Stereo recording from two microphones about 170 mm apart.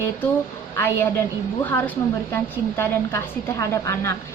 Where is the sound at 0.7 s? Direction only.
15° left (ahead or behind).